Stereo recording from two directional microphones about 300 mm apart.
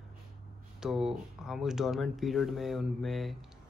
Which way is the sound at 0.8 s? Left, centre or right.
Centre.